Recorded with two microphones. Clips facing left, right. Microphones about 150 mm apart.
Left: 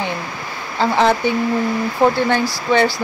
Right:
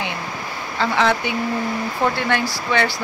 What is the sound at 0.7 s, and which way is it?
Speech, 35° left (ahead or behind).